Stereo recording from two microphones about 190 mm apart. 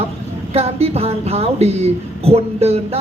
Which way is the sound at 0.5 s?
30° right (ahead or behind).